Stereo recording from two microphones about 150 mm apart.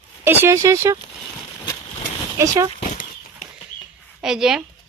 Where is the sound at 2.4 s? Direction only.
25° right (ahead or behind).